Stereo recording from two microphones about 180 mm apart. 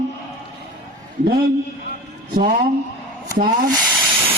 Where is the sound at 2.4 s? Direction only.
50° right (ahead or behind).